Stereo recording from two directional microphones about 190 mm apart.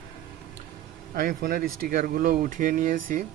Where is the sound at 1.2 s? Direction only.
45° right (ahead or behind).